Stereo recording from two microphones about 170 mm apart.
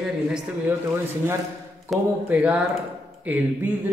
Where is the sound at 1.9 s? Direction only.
Centre (ahead or behind).